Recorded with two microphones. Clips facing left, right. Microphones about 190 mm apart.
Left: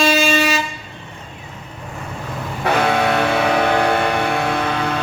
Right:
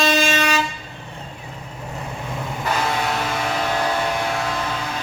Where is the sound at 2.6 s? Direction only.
65° left (ahead or behind).